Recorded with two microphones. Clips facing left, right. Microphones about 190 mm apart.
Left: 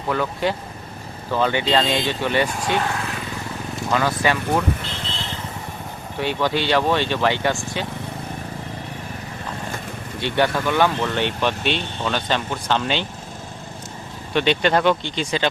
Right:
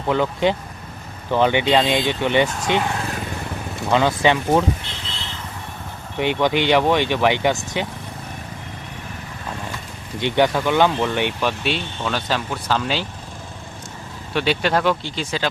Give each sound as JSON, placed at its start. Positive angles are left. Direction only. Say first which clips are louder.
{"t": 0.1, "sound": "speech", "louder": "right 3 dB", "side_deg": -20}
{"t": 3.9, "sound": "speech", "louder": "right 4 dB", "side_deg": -20}
{"t": 6.1, "sound": "speech", "louder": "right 3 dB", "side_deg": -20}
{"t": 10.2, "sound": "speech", "louder": "right 2 dB", "side_deg": -15}
{"t": 14.3, "sound": "speech", "louder": "left 1 dB", "side_deg": -5}